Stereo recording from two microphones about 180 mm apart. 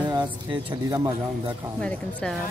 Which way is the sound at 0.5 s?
20° right (ahead or behind).